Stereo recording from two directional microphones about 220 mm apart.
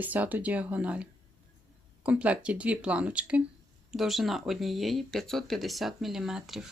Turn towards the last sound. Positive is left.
turn(degrees=0)  # may be behind; listen again after turning